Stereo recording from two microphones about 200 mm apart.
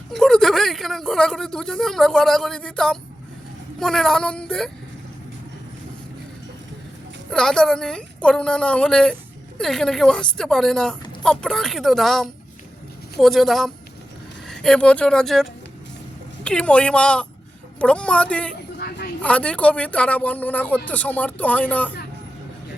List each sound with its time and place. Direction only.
0.1 s a woman's voice: centre (ahead or behind)
7.3 s a woman's voice: 5° left (ahead or behind)
18.8 s a sound: 50° left (ahead or behind)
19.2 s speech: 5° left (ahead or behind)